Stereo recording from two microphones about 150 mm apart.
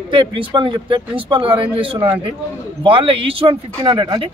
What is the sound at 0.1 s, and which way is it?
Speech, 35° right (ahead or behind).